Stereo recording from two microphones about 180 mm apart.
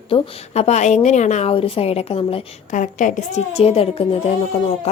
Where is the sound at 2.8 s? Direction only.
45° left (ahead or behind).